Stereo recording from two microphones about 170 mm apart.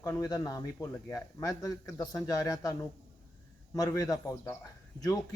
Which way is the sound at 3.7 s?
20° left (ahead or behind).